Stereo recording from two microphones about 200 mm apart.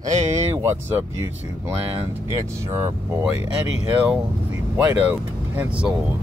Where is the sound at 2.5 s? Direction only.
15° right (ahead or behind).